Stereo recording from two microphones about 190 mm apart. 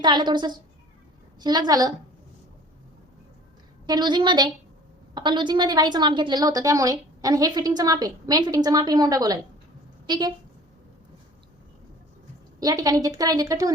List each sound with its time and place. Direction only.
0.0 s a woman's voice: 25° right (ahead or behind)
3.8 s a woman's voice: 20° right (ahead or behind)
12.5 s a woman's voice: 20° right (ahead or behind)